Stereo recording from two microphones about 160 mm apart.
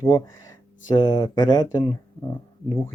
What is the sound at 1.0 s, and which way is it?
Speech, 25° left (ahead or behind).